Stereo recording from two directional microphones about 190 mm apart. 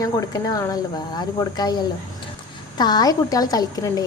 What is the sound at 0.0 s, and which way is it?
A woman's voice, 20° left (ahead or behind).